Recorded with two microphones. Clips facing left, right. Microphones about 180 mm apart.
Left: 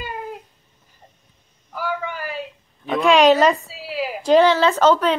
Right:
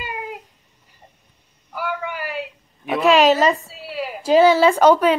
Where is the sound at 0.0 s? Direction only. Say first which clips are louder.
Even; 10° right (ahead or behind).